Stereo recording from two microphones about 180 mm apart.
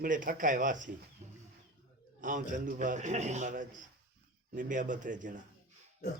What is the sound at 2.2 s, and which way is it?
A man's voice, 45° right (ahead or behind).